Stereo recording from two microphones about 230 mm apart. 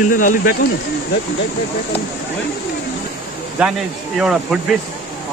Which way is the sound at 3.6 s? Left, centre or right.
Centre.